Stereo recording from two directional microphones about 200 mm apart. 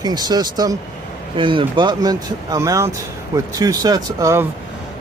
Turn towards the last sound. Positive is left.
turn(degrees=-15)  # may be behind; listen again after turning